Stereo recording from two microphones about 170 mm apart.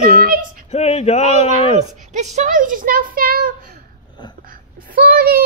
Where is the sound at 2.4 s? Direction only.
50° right (ahead or behind).